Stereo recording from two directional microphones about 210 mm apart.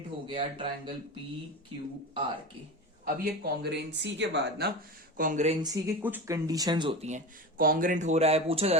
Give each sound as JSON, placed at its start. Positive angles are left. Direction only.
{"t": 0.3, "sound": "speech", "side_deg": -25}
{"t": 3.0, "sound": "speech", "side_deg": -50}
{"t": 5.1, "sound": "speech", "side_deg": -40}
{"t": 5.6, "sound": "speech", "side_deg": -15}